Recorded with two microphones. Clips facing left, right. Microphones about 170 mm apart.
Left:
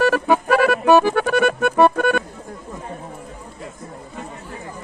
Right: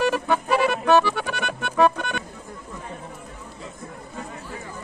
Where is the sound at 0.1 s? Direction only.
50° left (ahead or behind).